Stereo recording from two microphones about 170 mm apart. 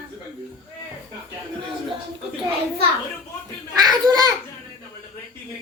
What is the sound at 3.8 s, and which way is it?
Speech, 25° right (ahead or behind).